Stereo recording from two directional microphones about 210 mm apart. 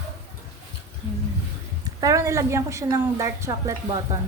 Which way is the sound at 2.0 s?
15° right (ahead or behind).